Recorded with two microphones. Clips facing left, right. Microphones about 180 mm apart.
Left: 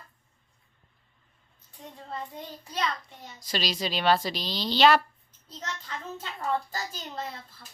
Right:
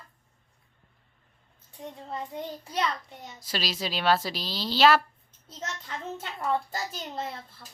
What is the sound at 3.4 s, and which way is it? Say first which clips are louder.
A woman's voice: left 2 dB; 5° right (ahead or behind).